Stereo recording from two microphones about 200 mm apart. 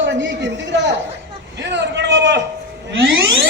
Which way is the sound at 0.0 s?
65° right (ahead or behind).